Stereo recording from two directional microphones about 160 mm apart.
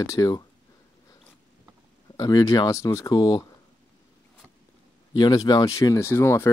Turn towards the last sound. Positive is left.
turn(degrees=15)  # may be behind; listen again after turning